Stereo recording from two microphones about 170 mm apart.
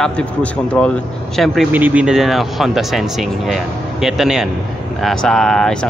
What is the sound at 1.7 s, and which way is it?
Speech, 10° right (ahead or behind).